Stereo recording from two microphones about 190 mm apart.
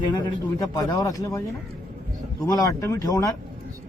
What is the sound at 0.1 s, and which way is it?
Speech, 20° left (ahead or behind).